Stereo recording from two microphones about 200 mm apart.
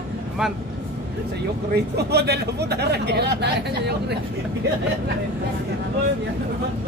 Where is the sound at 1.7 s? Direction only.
55° right (ahead or behind).